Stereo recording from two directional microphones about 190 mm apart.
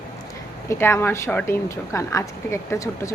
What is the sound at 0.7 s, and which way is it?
A woman's voice, 15° left (ahead or behind).